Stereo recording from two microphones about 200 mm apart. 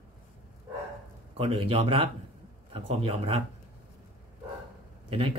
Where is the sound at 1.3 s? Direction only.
25° right (ahead or behind).